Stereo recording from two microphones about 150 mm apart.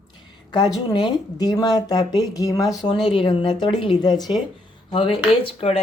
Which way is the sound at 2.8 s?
35° left (ahead or behind).